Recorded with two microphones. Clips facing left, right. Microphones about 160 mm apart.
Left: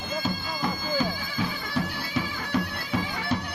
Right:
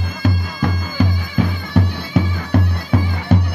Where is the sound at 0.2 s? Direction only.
65° right (ahead or behind).